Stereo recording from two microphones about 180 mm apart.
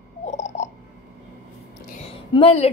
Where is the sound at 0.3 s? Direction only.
40° left (ahead or behind).